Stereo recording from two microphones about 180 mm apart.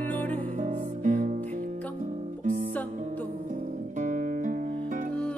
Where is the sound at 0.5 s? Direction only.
45° right (ahead or behind).